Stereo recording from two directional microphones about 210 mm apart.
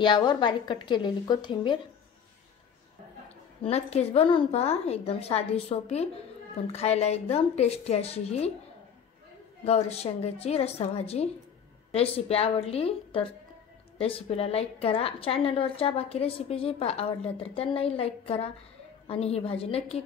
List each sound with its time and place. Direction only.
0.0 s a woman's voice: 20° left (ahead or behind)
3.6 s a woman's voice: 30° left (ahead or behind)
9.7 s a woman's voice: 30° left (ahead or behind)